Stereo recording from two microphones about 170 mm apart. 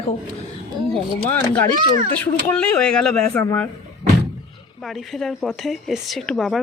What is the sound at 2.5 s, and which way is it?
Speech, 5° left (ahead or behind).